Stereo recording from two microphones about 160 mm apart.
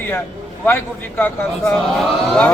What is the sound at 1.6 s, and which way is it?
Speech, centre (ahead or behind).